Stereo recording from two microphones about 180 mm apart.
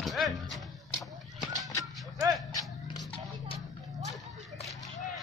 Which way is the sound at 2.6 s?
25° left (ahead or behind).